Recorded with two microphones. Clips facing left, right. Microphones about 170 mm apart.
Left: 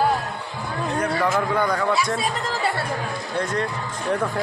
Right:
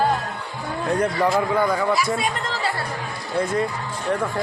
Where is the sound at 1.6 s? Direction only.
5° right (ahead or behind).